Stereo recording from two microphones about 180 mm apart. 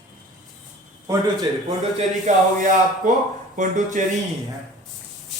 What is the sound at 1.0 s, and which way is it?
Speech, 20° right (ahead or behind).